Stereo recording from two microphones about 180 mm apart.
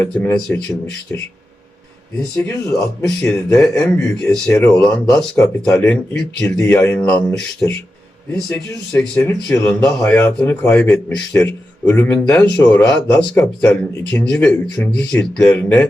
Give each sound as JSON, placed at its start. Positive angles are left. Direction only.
{"t": 0.0, "sound": "speech", "side_deg": 10}
{"t": 2.3, "sound": "speech", "side_deg": 5}